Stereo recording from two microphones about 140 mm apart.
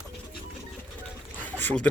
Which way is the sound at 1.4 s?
10° left (ahead or behind).